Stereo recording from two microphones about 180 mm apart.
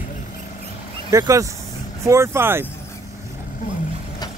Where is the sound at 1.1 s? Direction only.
20° right (ahead or behind).